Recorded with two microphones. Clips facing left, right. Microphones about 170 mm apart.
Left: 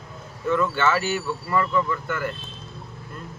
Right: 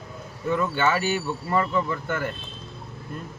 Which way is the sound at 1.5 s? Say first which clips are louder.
Left 1 dB; 30° right (ahead or behind).